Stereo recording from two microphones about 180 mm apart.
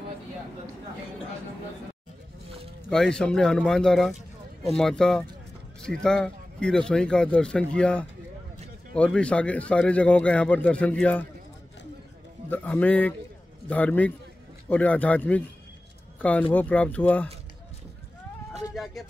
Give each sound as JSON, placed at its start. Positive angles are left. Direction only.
{"t": 2.4, "sound": "a sound", "side_deg": -35}
{"t": 2.9, "sound": "a man's voice", "side_deg": 5}
{"t": 12.4, "sound": "a man's voice", "side_deg": 10}